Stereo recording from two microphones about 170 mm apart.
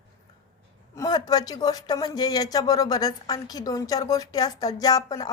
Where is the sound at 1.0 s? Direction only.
25° left (ahead or behind).